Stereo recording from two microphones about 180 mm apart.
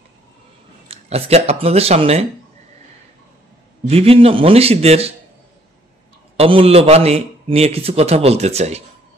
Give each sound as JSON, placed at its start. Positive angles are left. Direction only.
{"t": 0.8, "sound": "speech", "side_deg": -35}
{"t": 3.8, "sound": "a man's voice", "side_deg": -35}
{"t": 6.3, "sound": "a man's voice", "side_deg": -30}